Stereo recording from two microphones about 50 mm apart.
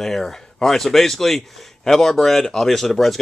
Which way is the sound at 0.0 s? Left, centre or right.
Centre.